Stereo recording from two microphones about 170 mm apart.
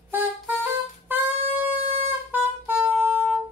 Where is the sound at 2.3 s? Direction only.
10° right (ahead or behind).